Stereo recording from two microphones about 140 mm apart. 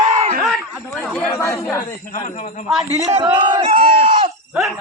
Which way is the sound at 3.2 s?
35° right (ahead or behind).